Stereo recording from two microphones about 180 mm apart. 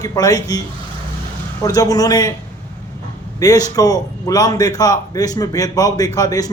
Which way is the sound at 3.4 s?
20° left (ahead or behind).